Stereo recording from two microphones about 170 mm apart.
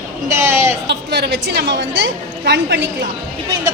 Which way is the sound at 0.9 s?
85° right.